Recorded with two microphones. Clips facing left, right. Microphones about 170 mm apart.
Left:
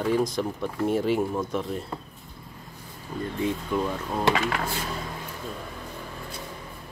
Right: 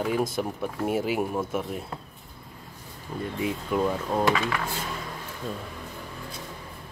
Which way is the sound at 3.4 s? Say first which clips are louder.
Right 1 dB; 15° right (ahead or behind).